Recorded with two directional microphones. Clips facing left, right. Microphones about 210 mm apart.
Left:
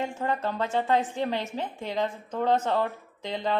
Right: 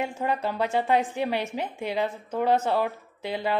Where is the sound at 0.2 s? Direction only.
10° right (ahead or behind).